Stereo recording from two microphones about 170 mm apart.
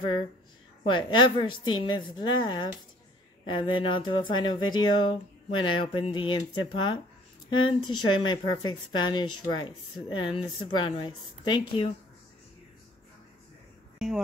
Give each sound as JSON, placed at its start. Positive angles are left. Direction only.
{"t": 0.8, "sound": "speech", "side_deg": 30}
{"t": 13.9, "sound": "speech", "side_deg": 0}